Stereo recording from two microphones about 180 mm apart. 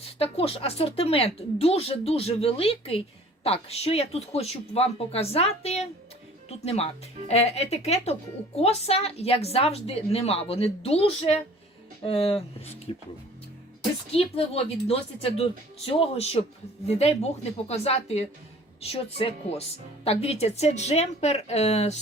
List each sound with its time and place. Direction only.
0.2 s speech: 35° left (ahead or behind)
14.1 s speech: 35° left (ahead or behind)